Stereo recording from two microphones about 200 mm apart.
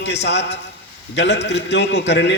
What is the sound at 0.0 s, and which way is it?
A man's voice, 60° left (ahead or behind).